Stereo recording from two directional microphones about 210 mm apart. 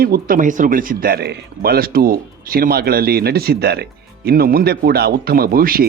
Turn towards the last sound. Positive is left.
turn(degrees=-45)  # may be behind; listen again after turning